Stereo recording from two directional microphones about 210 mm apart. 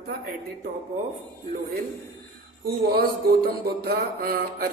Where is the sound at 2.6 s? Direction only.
45° right (ahead or behind).